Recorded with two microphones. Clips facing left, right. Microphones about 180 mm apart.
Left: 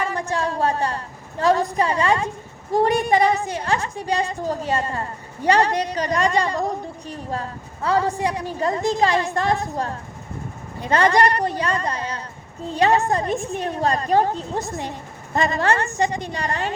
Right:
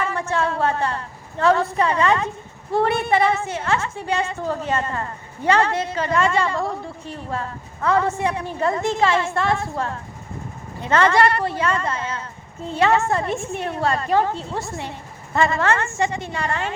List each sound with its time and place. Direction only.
0.0 s a sound: 35° left (ahead or behind)
1.8 s a woman's voice: 35° left (ahead or behind)
11.0 s a woman's voice: 15° left (ahead or behind)
11.5 s a woman's voice: 40° left (ahead or behind)